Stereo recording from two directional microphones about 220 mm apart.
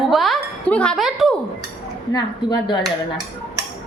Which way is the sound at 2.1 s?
20° left (ahead or behind).